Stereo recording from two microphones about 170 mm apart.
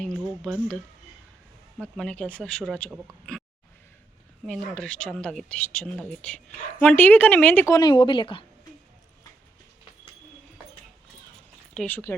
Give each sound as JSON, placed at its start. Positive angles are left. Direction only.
{"t": 0.0, "sound": "speech", "side_deg": 5}
{"t": 1.8, "sound": "speech", "side_deg": 5}
{"t": 4.4, "sound": "speech", "side_deg": 5}
{"t": 7.8, "sound": "speech", "side_deg": 25}
{"t": 11.7, "sound": "speech", "side_deg": 5}